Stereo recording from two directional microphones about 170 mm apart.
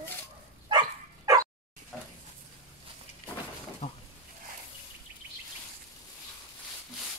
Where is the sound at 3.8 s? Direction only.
40° left (ahead or behind).